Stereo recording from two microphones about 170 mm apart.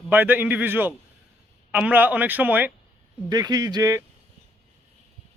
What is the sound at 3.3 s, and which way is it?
Speech, 25° right (ahead or behind).